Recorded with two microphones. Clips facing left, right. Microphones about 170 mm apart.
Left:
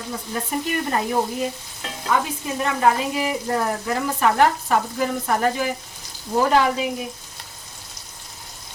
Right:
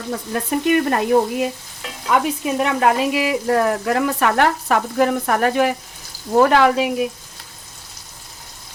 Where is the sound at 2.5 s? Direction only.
85° right.